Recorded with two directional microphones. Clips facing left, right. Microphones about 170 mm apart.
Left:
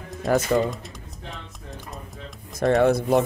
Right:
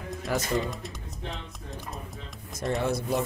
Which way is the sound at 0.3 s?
50° left (ahead or behind).